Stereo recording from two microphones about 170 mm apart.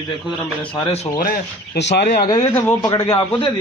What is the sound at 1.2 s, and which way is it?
Speech, 75° left (ahead or behind).